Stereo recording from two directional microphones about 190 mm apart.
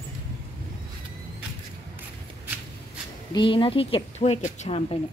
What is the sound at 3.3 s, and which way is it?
Speech, 25° left (ahead or behind).